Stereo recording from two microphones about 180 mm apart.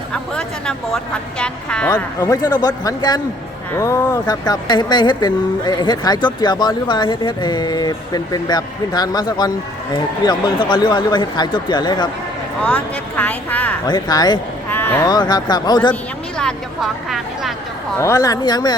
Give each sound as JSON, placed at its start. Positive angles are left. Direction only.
{"t": 0.1, "sound": "a woman's voice", "side_deg": 5}
{"t": 12.6, "sound": "speech", "side_deg": 10}
{"t": 13.8, "sound": "speech", "side_deg": 20}
{"t": 14.7, "sound": "speech", "side_deg": 10}
{"t": 16.4, "sound": "a woman's voice", "side_deg": 0}
{"t": 17.9, "sound": "speech", "side_deg": 15}